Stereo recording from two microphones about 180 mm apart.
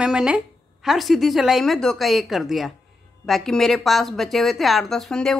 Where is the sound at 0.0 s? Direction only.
5° right (ahead or behind).